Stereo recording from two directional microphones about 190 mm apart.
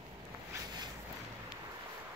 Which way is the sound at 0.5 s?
15° right (ahead or behind).